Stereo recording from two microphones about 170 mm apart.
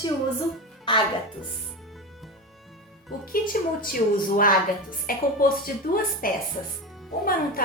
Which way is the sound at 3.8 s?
55° left (ahead or behind).